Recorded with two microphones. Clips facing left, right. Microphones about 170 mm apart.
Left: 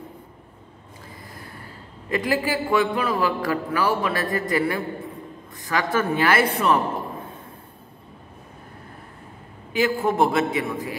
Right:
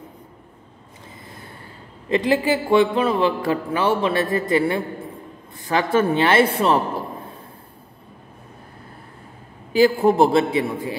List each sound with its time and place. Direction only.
2.0 s a man's voice: 25° right (ahead or behind)
9.7 s a man's voice: 30° right (ahead or behind)